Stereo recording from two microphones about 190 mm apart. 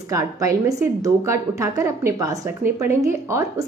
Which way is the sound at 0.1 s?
15° right (ahead or behind).